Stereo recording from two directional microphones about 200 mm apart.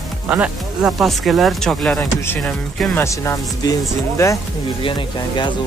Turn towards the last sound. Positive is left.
turn(degrees=25)  # may be behind; listen again after turning